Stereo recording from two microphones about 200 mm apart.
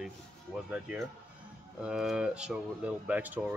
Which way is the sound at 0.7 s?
5° right (ahead or behind).